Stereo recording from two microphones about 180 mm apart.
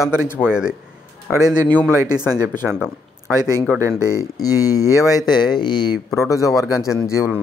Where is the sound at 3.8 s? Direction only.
15° right (ahead or behind).